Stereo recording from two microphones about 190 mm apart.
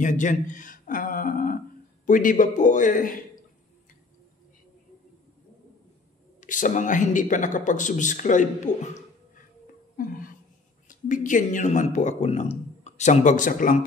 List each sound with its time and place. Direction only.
0.0 s speech: 40° left (ahead or behind)
6.4 s speech: 45° left (ahead or behind)
9.9 s a sound: 45° left (ahead or behind)
10.9 s speech: 45° left (ahead or behind)